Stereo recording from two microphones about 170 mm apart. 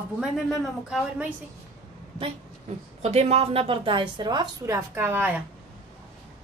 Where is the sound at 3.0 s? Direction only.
35° right (ahead or behind); by 5.4 s 10° right (ahead or behind).